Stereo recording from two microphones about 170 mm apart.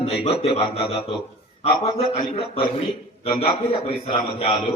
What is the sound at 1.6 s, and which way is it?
Speech, 35° left (ahead or behind).